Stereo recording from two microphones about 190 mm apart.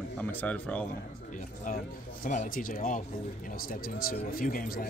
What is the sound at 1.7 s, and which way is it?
Speech, 45° left (ahead or behind).